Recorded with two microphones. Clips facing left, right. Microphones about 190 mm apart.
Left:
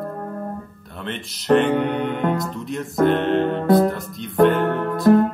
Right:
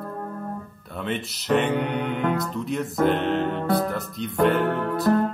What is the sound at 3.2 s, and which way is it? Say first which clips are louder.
Music: left 4 dB; 40° left (ahead or behind).